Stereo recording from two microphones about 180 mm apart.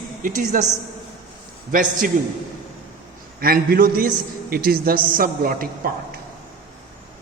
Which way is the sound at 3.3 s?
55° right (ahead or behind).